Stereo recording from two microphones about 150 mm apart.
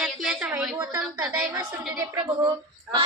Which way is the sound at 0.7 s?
25° right (ahead or behind).